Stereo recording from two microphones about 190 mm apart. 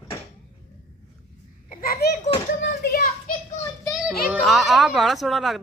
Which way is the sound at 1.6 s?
50° left (ahead or behind).